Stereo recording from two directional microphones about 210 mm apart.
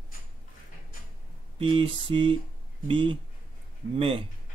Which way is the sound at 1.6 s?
25° right (ahead or behind).